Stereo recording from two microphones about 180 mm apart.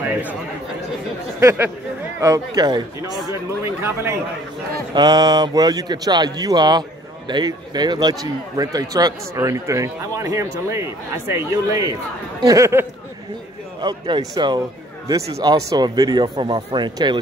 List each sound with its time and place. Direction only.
1.4 s speech: 15° right (ahead or behind)